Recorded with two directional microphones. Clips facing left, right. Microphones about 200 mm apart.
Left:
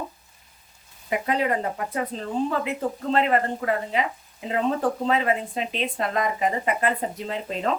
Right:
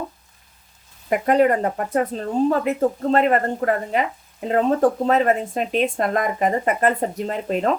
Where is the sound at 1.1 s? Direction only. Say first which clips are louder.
Right 7 dB; 50° right (ahead or behind).